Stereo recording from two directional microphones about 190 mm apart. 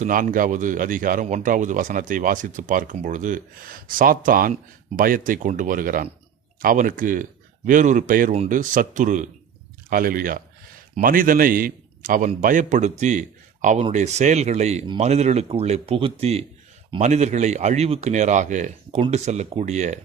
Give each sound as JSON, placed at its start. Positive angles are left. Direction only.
{"t": 0.0, "sound": "speech", "side_deg": -45}